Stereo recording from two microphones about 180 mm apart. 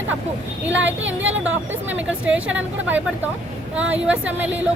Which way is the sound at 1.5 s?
10° right (ahead or behind).